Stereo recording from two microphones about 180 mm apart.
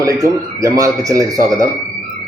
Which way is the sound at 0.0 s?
20° right (ahead or behind).